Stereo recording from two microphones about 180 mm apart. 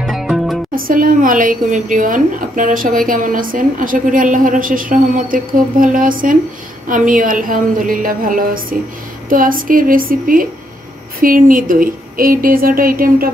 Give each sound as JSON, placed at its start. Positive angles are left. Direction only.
{"t": 0.0, "sound": "music", "side_deg": 0}
{"t": 0.7, "sound": "speech", "side_deg": -50}